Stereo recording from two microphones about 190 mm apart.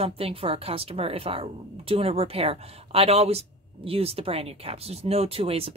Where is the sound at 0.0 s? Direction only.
30° right (ahead or behind).